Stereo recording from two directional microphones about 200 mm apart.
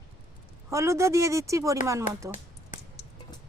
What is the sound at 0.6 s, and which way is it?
A woman's voice, 15° right (ahead or behind).